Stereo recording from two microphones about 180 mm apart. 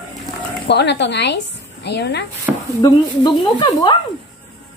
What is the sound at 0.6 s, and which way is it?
Speech, 70° left (ahead or behind).